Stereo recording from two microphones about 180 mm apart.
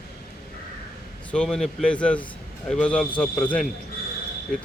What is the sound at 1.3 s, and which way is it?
Speech, 5° left (ahead or behind).